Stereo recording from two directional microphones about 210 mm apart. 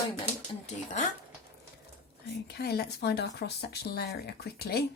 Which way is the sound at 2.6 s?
50° left (ahead or behind).